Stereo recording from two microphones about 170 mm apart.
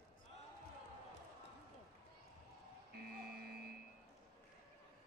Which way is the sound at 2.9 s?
65° right (ahead or behind).